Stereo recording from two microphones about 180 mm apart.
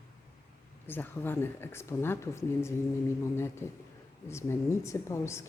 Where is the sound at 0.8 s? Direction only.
10° left (ahead or behind).